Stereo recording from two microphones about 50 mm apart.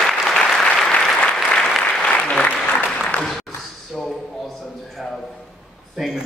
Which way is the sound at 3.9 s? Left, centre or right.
Centre.